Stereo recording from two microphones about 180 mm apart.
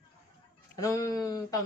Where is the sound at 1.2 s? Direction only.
20° left (ahead or behind).